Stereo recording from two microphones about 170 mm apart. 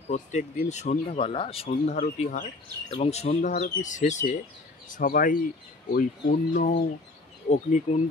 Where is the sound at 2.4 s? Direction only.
35° left (ahead or behind); by 5.4 s 55° left (ahead or behind).